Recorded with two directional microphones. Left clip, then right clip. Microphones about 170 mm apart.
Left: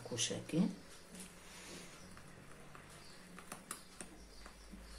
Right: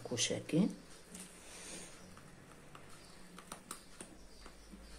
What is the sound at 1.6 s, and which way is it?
Vehicle, 20° right (ahead or behind).